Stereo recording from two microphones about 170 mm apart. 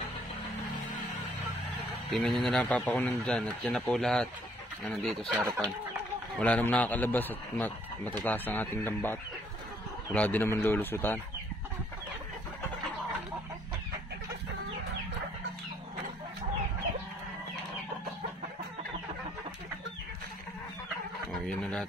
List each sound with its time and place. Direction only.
2.1 s a man's voice: 5° left (ahead or behind)
5.4 s speech: 20° right (ahead or behind)
6.4 s speech: 10° left (ahead or behind)
21.3 s a sound: 5° left (ahead or behind)